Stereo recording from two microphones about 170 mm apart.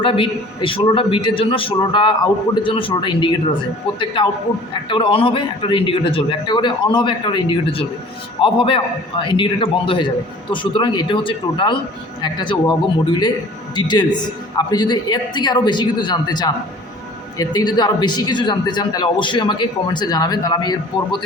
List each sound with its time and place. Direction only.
0.0 s a man's voice: 30° left (ahead or behind)
4.7 s a man's voice: 30° left (ahead or behind)